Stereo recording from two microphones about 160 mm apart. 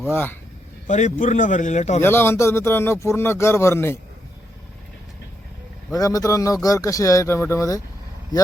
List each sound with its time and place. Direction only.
0.0 s speech: 10° left (ahead or behind)
0.9 s a man's voice: 50° left (ahead or behind)
2.0 s speech: 15° left (ahead or behind)
5.9 s speech: 20° left (ahead or behind)